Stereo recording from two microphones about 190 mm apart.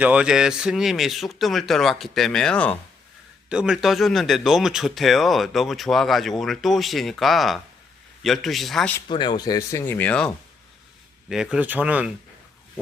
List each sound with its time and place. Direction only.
0.0 s speech: 5° right (ahead or behind)
9.0 s speech: 25° left (ahead or behind); by 12.1 s 10° right (ahead or behind)